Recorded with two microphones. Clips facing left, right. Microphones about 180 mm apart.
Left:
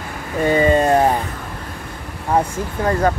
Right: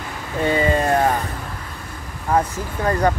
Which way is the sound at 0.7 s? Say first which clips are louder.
Left 3 dB; 25° left (ahead or behind).